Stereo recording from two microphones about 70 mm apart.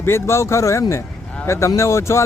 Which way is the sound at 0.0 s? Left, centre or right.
Left.